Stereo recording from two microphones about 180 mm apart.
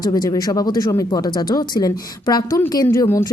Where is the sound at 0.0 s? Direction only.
20° left (ahead or behind).